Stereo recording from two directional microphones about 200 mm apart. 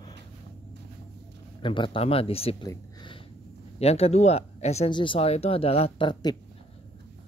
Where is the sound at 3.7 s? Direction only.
30° left (ahead or behind).